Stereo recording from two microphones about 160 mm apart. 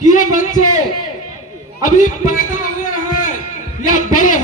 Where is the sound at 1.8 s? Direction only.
50° left (ahead or behind).